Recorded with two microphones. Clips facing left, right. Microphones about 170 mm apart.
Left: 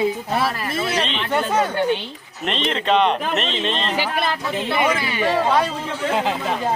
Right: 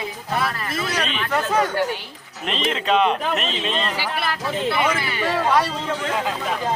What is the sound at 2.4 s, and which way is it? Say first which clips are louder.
Speech: left 1 dB; 5° right (ahead or behind).